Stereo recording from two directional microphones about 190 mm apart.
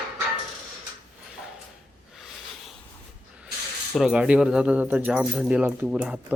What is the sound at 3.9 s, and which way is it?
Speech, 5° right (ahead or behind).